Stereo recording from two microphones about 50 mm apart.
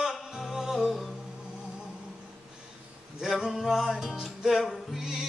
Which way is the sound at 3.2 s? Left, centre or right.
Centre.